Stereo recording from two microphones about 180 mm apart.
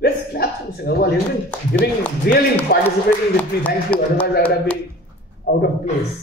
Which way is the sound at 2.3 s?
60° left (ahead or behind).